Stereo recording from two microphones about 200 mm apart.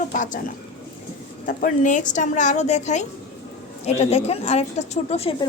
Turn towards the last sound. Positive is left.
turn(degrees=30)  # may be behind; listen again after turning